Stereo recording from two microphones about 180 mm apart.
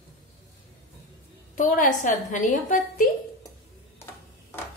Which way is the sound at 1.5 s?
45° left (ahead or behind).